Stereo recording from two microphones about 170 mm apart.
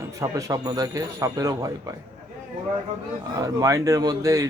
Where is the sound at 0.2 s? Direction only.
20° right (ahead or behind).